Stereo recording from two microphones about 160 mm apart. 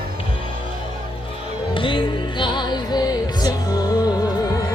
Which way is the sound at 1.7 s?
30° left (ahead or behind).